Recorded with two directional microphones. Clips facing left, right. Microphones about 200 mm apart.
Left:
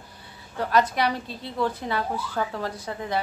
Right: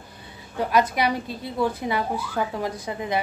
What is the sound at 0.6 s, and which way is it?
A woman's voice, 10° right (ahead or behind).